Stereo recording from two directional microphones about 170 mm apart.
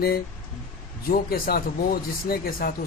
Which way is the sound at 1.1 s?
60° left (ahead or behind).